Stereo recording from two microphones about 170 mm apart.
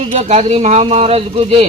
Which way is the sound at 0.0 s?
40° right (ahead or behind).